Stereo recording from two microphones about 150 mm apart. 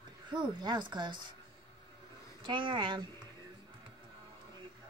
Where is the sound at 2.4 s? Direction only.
35° right (ahead or behind).